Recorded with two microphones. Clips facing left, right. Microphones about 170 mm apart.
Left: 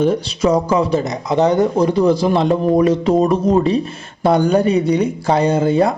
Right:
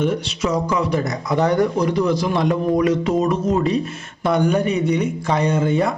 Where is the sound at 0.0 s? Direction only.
30° left (ahead or behind).